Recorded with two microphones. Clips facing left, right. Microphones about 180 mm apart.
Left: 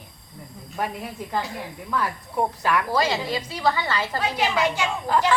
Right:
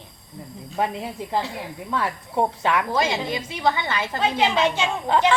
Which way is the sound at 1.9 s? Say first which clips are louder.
Right 1 dB; 25° right (ahead or behind).